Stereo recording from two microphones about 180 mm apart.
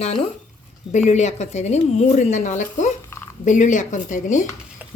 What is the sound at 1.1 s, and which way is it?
Speech, 40° left (ahead or behind).